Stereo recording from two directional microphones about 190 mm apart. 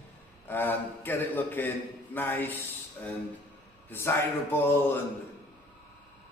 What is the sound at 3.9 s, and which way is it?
A man's voice, 10° left (ahead or behind).